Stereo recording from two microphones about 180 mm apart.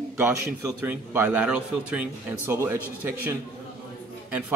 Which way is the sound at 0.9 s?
10° right (ahead or behind).